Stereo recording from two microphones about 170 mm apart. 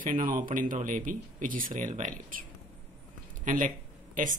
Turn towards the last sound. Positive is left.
turn(degrees=-50)  # may be behind; listen again after turning